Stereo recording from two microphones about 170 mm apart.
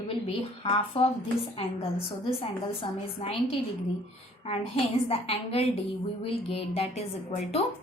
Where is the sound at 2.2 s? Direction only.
30° left (ahead or behind).